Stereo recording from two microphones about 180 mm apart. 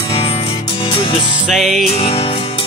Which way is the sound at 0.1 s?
30° left (ahead or behind).